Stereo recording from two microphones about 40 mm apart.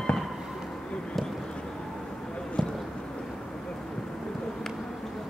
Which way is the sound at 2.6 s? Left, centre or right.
Centre.